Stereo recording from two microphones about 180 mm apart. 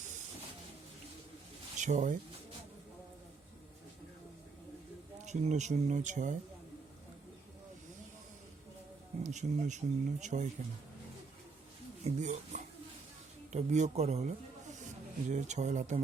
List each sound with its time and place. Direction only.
1.8 s speech: 40° right (ahead or behind)
5.2 s speech: 40° right (ahead or behind)
9.2 s speech: 40° right (ahead or behind)
12.0 s speech: 40° right (ahead or behind)